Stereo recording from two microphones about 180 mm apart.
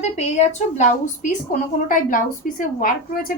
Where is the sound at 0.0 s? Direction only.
40° left (ahead or behind).